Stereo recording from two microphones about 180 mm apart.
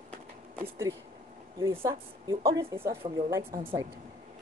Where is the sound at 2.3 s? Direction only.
20° right (ahead or behind).